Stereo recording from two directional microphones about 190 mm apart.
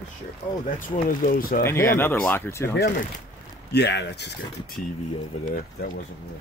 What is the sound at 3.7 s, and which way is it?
Speech, 65° left (ahead or behind).